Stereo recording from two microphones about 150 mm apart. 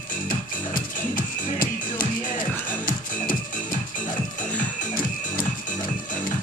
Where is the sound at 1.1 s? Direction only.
65° left (ahead or behind).